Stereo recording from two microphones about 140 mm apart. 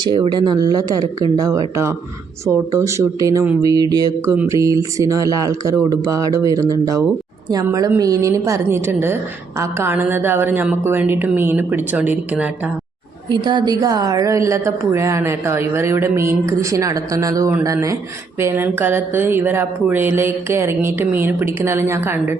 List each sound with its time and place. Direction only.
0.0 s a woman's voice: 30° right (ahead or behind); by 12.5 s 10° right (ahead or behind)
13.3 s a woman's voice: 35° right (ahead or behind); by 22.4 s 15° right (ahead or behind)